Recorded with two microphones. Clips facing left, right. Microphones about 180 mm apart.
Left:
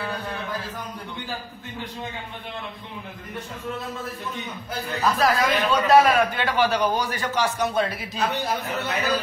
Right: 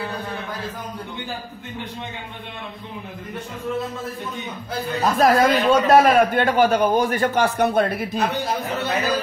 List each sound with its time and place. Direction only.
5.0 s a man's voice: 45° right (ahead or behind)